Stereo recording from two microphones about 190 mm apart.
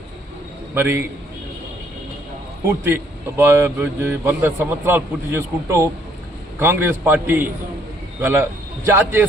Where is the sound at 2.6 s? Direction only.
10° right (ahead or behind).